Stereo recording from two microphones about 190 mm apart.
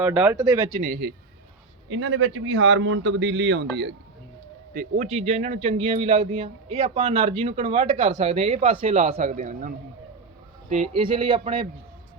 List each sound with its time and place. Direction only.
0.0 s speech: 10° right (ahead or behind)
1.9 s speech: 90° right; by 3.9 s 65° right (ahead or behind)
4.7 s speech: 50° right (ahead or behind)
5.0 s speech: 35° right (ahead or behind)
11.0 s speech: 25° right (ahead or behind)